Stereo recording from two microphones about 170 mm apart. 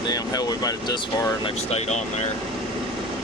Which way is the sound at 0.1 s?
20° left (ahead or behind).